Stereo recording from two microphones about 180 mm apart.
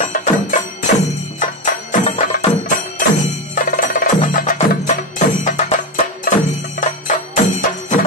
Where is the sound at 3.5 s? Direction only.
50° left (ahead or behind).